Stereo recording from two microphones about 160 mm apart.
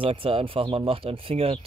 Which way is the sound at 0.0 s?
35° right (ahead or behind).